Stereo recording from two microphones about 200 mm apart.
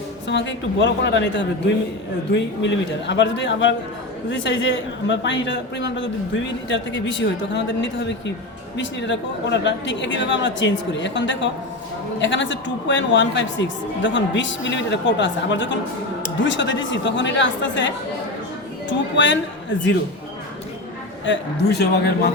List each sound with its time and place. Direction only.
0.3 s a man's voice: 65° left (ahead or behind)
21.2 s a man's voice: 55° left (ahead or behind)